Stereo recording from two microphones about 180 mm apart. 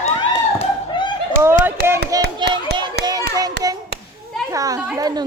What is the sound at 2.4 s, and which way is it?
Clapping, 25° right (ahead or behind).